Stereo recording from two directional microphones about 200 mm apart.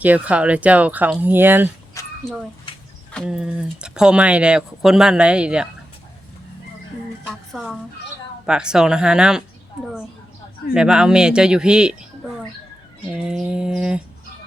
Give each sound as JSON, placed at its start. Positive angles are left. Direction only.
{"t": 0.0, "sound": "speech", "side_deg": -5}
{"t": 2.0, "sound": "a sound", "side_deg": 15}
{"t": 3.1, "sound": "speech", "side_deg": 0}
{"t": 7.3, "sound": "a woman's voice", "side_deg": 0}
{"t": 10.8, "sound": "speech", "side_deg": -5}
{"t": 13.2, "sound": "speech", "side_deg": -5}